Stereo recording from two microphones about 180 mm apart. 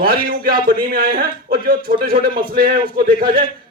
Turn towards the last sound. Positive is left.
turn(degrees=-55)  # may be behind; listen again after turning